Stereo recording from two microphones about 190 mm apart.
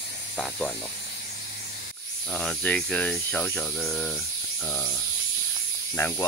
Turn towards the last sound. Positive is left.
turn(degrees=15)  # may be behind; listen again after turning